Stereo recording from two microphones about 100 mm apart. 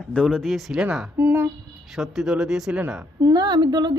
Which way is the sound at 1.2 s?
20° right (ahead or behind).